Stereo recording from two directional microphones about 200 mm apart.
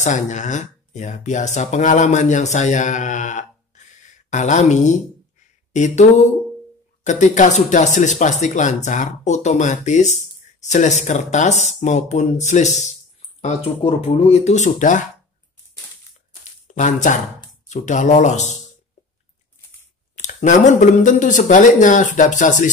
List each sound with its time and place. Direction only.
0.0 s speech: 35° left (ahead or behind)
16.6 s speech: 40° left (ahead or behind)
20.2 s speech: 40° left (ahead or behind)